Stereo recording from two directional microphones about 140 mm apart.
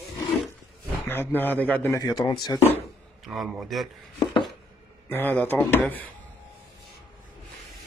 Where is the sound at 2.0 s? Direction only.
25° left (ahead or behind).